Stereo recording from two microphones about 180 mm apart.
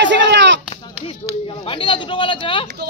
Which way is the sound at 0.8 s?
30° left (ahead or behind).